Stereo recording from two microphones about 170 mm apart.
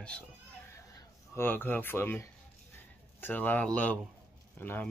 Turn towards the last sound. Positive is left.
turn(degrees=10)  # may be behind; listen again after turning